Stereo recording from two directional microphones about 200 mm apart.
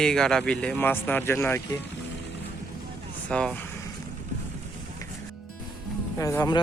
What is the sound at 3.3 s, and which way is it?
Speech, 5° left (ahead or behind).